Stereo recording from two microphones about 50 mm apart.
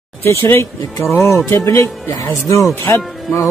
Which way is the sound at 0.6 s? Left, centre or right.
Left.